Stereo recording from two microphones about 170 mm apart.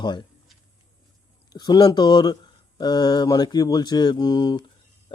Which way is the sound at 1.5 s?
25° left (ahead or behind).